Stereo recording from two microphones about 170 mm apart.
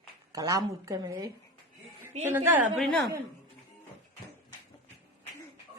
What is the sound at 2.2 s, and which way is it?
Speech, 15° right (ahead or behind).